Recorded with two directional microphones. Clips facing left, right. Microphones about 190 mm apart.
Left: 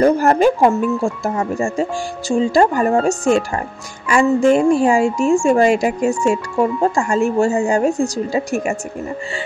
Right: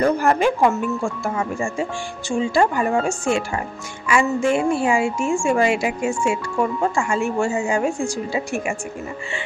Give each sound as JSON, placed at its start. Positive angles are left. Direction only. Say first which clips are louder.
{"t": 0.2, "sound": "speech", "louder": "left 4 dB", "side_deg": 40}